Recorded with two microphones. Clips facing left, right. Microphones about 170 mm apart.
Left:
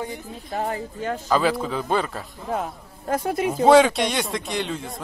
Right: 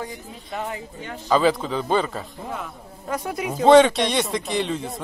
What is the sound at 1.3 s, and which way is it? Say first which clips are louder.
Speech: right 3 dB; centre (ahead or behind).